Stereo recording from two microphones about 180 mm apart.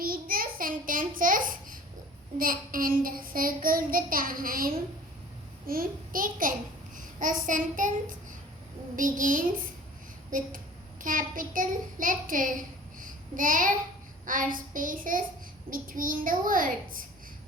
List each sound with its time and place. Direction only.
0.0 s child singing: 55° right (ahead or behind)
11.0 s a child's voice: 50° right (ahead or behind)
14.3 s child singing: 50° right (ahead or behind)